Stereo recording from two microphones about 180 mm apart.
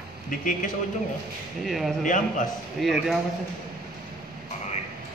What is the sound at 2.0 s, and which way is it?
Speech, 45° left (ahead or behind).